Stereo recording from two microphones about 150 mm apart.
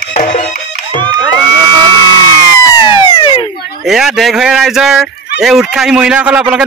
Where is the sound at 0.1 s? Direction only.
50° left (ahead or behind).